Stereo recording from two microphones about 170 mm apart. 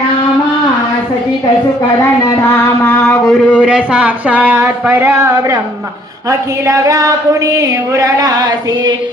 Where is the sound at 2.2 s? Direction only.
10° left (ahead or behind).